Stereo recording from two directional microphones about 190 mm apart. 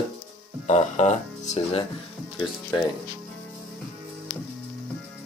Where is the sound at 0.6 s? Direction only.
40° left (ahead or behind).